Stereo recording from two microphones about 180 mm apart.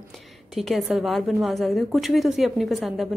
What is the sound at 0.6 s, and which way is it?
A woman's voice, centre (ahead or behind).